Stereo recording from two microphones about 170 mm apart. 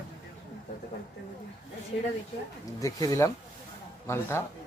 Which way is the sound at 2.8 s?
20° left (ahead or behind).